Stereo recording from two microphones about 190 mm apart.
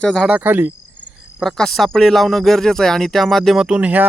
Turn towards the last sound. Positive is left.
turn(degrees=-5)  # may be behind; listen again after turning